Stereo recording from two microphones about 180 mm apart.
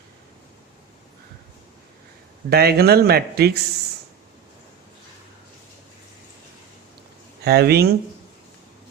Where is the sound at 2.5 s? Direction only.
60° right (ahead or behind).